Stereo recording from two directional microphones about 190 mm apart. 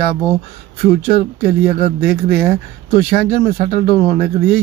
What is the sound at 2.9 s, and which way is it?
A man's voice, 35° left (ahead or behind).